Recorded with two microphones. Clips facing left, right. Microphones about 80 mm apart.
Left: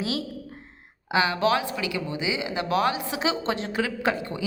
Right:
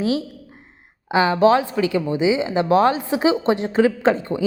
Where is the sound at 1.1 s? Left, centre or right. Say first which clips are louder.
Right 7 dB; right.